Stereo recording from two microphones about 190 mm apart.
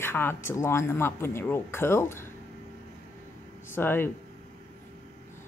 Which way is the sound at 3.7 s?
10° left (ahead or behind).